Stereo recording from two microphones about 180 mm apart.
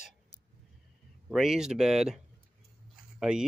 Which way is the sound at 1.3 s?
Centre (ahead or behind).